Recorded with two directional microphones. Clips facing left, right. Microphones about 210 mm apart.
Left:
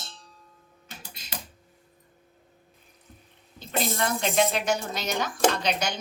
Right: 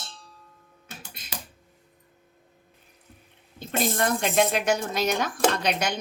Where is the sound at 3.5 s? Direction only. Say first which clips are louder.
Right 2 dB; 55° right (ahead or behind).